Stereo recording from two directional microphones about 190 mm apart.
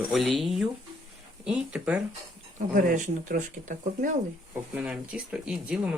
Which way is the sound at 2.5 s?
45° right (ahead or behind).